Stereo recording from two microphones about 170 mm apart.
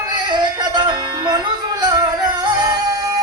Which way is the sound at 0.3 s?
25° right (ahead or behind).